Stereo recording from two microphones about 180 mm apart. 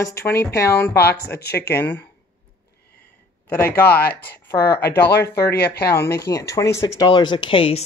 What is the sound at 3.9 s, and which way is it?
Speech, 60° left (ahead or behind).